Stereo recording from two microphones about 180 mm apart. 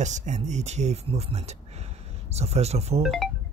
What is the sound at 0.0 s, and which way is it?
Speech, 40° right (ahead or behind).